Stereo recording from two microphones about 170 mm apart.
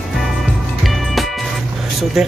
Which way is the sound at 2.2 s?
Centre (ahead or behind).